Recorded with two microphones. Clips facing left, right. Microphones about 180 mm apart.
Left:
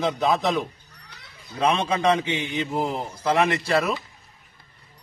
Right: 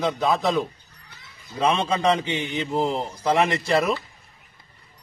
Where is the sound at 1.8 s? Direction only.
10° left (ahead or behind).